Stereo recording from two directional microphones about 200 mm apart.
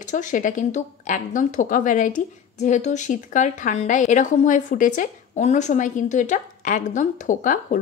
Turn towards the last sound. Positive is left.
turn(degrees=40)  # may be behind; listen again after turning